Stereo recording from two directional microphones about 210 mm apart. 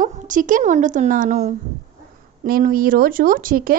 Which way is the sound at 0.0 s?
40° right (ahead or behind).